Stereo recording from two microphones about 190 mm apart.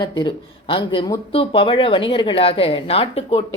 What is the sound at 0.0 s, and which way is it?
A woman's voice, 25° left (ahead or behind).